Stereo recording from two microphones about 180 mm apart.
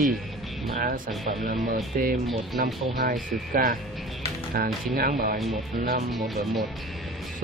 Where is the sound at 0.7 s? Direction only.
50° right (ahead or behind).